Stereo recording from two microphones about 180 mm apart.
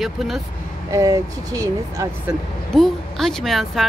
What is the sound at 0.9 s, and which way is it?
Speech, 20° right (ahead or behind).